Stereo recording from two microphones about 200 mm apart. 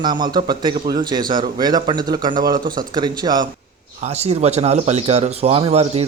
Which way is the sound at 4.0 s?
30° right (ahead or behind).